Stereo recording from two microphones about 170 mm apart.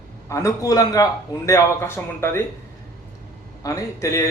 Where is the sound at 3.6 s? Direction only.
15° left (ahead or behind).